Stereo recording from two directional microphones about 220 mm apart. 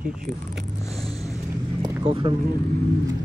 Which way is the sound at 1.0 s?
30° right (ahead or behind).